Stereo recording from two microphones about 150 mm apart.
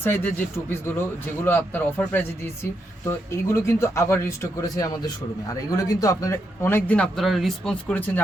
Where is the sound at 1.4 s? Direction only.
15° left (ahead or behind).